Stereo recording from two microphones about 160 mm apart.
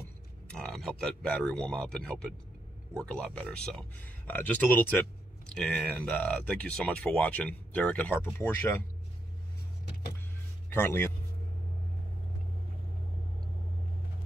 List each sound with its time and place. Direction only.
0.0 s speech: 5° left (ahead or behind)
10.7 s speech: 15° left (ahead or behind)